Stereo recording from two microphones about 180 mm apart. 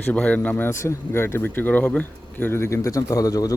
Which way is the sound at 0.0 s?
10° left (ahead or behind).